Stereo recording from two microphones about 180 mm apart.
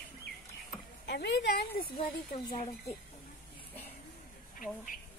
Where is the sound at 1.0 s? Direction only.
70° left (ahead or behind).